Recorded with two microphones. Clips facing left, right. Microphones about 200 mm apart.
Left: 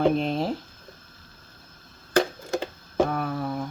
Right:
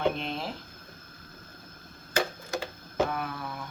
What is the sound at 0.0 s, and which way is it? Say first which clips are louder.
Speech: left 7 dB; 40° left (ahead or behind).